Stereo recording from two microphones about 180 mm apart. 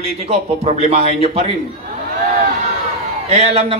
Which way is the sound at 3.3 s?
35° right (ahead or behind).